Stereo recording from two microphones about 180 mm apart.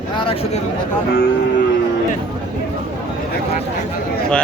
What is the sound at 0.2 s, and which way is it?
Speech, 30° left (ahead or behind).